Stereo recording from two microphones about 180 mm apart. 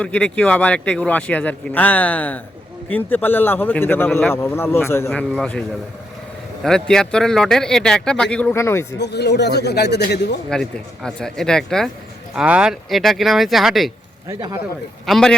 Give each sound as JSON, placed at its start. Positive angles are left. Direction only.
{"t": 0.0, "sound": "a man's voice", "side_deg": 5}
{"t": 9.0, "sound": "a man's voice", "side_deg": 70}
{"t": 10.5, "sound": "a man's voice", "side_deg": 5}
{"t": 14.3, "sound": "speech", "side_deg": -20}
{"t": 15.0, "sound": "a man's voice", "side_deg": 0}